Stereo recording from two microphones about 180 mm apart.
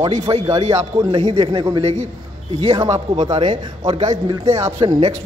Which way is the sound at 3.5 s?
35° right (ahead or behind).